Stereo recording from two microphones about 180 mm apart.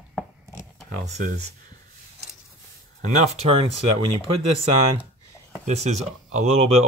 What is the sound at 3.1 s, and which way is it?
Speech, 35° right (ahead or behind).